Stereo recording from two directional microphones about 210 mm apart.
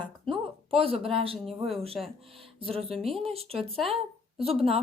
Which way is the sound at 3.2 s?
30° right (ahead or behind).